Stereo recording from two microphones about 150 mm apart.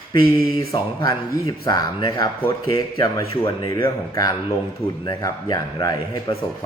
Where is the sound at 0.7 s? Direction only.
25° left (ahead or behind).